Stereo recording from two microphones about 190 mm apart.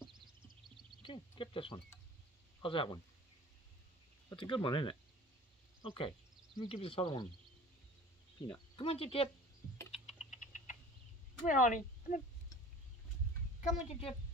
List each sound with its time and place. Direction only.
1.0 s speech: 25° left (ahead or behind)
4.3 s speech: 25° left (ahead or behind)
8.4 s speech: 25° left (ahead or behind)
9.8 s typing: 35° left (ahead or behind)
11.4 s speech: 45° left (ahead or behind)
13.6 s a woman's voice: 30° left (ahead or behind)